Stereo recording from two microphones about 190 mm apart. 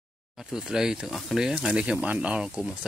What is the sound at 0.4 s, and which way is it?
Speech, 5° right (ahead or behind).